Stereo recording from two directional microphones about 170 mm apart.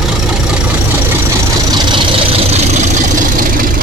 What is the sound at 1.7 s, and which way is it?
Vehicle, 30° right (ahead or behind).